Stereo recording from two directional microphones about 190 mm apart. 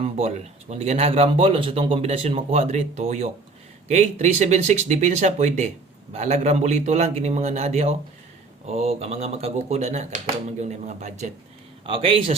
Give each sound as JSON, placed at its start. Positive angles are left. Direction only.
{"t": 0.0, "sound": "speech", "side_deg": -35}